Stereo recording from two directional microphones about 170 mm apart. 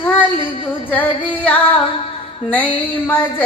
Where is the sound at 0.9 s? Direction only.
10° left (ahead or behind).